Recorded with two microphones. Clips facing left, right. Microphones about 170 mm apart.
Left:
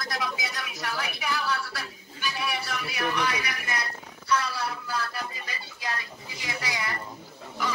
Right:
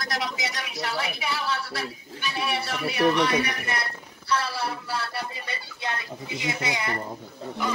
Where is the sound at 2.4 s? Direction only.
25° right (ahead or behind).